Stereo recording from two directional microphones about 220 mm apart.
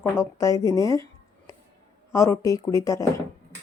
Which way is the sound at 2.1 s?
15° left (ahead or behind).